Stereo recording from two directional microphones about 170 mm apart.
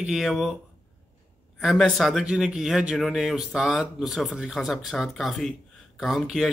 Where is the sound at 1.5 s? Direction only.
Centre (ahead or behind).